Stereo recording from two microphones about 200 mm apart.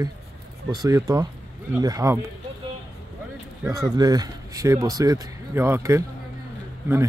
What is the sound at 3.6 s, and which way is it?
Speech, 15° right (ahead or behind).